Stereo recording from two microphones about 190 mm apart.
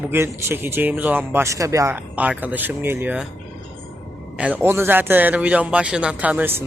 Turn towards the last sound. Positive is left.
turn(degrees=-10)  # may be behind; listen again after turning